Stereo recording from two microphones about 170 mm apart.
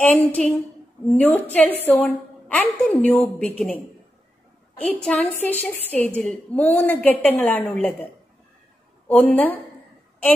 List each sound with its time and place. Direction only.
0.0 s a woman's voice: 10° left (ahead or behind)
4.8 s a woman's voice: 10° left (ahead or behind)